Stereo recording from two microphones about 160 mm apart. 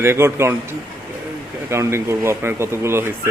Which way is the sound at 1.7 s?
15° right (ahead or behind).